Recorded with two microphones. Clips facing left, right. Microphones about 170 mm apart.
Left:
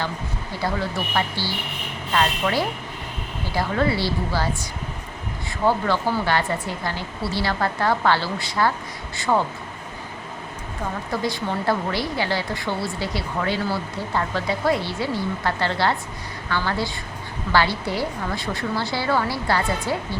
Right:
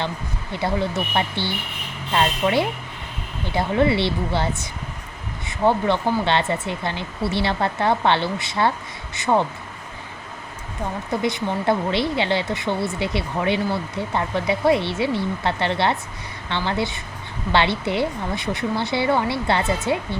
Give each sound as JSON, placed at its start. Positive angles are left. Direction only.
{"t": 0.5, "sound": "speech", "side_deg": -20}
{"t": 11.1, "sound": "speech", "side_deg": -20}